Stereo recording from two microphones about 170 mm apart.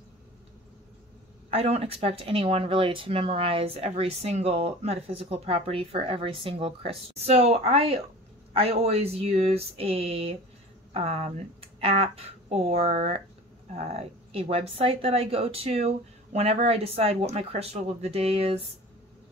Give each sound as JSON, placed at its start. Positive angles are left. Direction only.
{"t": 1.5, "sound": "speech", "side_deg": -35}